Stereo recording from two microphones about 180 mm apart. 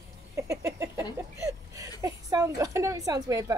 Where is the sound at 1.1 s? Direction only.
15° right (ahead or behind).